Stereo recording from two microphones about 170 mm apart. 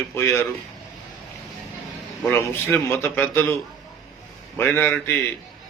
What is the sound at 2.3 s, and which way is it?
A man's voice, 10° left (ahead or behind).